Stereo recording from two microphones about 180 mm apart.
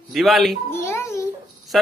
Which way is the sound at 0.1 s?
Centre (ahead or behind).